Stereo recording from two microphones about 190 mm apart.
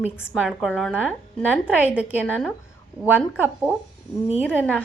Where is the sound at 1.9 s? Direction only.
10° right (ahead or behind).